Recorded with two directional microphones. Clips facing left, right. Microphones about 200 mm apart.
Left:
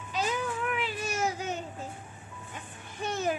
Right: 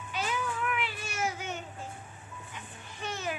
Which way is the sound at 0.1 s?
40° left (ahead or behind).